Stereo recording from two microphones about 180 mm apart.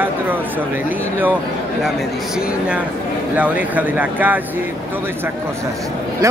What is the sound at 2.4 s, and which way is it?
A man's voice, 5° right (ahead or behind).